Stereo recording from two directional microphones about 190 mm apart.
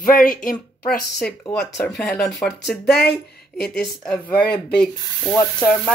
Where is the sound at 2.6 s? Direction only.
60° left (ahead or behind).